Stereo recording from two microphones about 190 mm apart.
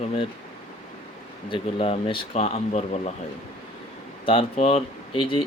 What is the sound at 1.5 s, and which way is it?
Speech, 30° left (ahead or behind).